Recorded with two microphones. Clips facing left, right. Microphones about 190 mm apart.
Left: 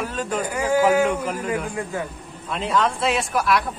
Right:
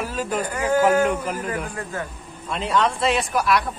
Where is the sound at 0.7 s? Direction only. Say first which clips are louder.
Even; 10° left (ahead or behind).